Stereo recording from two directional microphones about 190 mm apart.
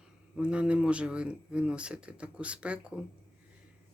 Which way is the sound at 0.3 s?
5° right (ahead or behind).